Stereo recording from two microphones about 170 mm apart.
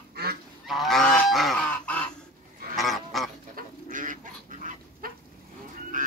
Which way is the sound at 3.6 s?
50° right (ahead or behind).